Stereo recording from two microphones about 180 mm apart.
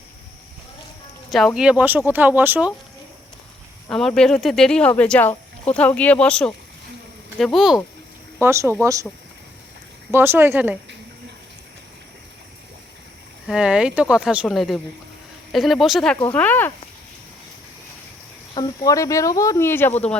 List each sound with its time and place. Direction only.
1.3 s speech: centre (ahead or behind)
3.8 s speech: 5° left (ahead or behind)
8.4 s speech: 15° right (ahead or behind)
10.1 s speech: 10° right (ahead or behind)
13.5 s speech: 5° right (ahead or behind); by 16.7 s 10° left (ahead or behind)
18.5 s speech: 20° left (ahead or behind)